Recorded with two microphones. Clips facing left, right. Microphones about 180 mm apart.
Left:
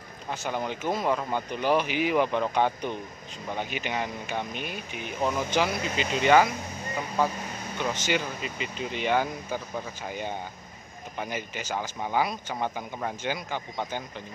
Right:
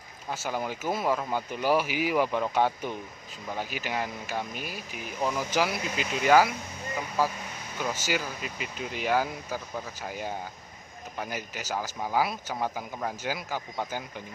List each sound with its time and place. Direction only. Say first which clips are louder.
0.3 s speech: left 1 dB; 5° right (ahead or behind)